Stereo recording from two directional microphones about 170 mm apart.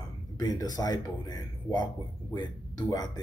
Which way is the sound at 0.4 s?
25° left (ahead or behind).